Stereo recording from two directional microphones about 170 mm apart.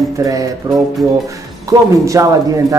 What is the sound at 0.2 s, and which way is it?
Speech, 20° right (ahead or behind).